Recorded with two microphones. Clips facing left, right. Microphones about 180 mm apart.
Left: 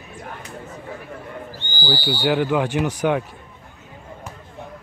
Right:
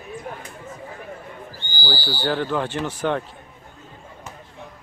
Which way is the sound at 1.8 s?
20° left (ahead or behind).